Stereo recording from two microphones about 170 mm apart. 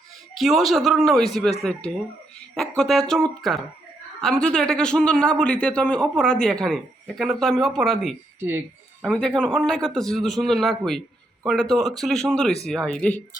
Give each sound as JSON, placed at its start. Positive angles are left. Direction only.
{"t": 0.3, "sound": "a man's voice", "side_deg": 0}
{"t": 8.4, "sound": "speech", "side_deg": -15}
{"t": 9.0, "sound": "a man's voice", "side_deg": 5}